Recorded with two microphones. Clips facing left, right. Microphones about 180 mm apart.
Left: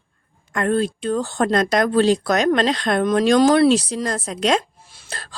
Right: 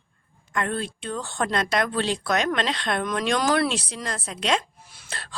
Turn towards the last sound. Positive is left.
turn(degrees=30)  # may be behind; listen again after turning